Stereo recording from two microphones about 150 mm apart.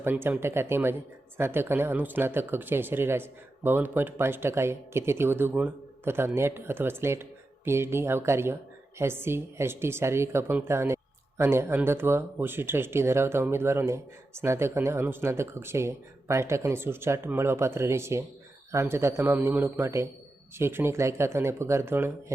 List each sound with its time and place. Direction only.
0.0 s speech: 15° right (ahead or behind)